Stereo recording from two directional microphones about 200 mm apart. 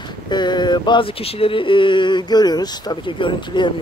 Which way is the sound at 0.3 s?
20° left (ahead or behind).